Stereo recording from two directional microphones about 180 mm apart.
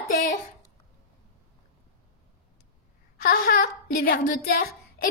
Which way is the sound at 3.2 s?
55° left (ahead or behind).